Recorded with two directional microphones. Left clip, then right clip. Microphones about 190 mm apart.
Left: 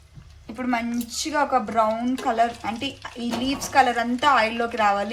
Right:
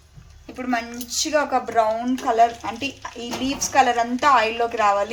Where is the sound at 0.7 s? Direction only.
35° right (ahead or behind).